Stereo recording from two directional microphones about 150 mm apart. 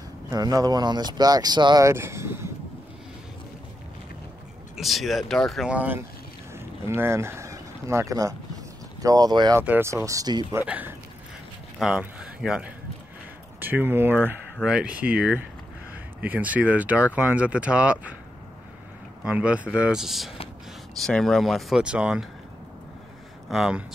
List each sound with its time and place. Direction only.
0.3 s speech: 25° right (ahead or behind)
4.7 s speech: centre (ahead or behind); by 9.6 s 25° right (ahead or behind)
9.6 s speech: 15° right (ahead or behind)
10.6 s speech: 10° right (ahead or behind)
19.2 s speech: 10° right (ahead or behind)
23.5 s speech: centre (ahead or behind)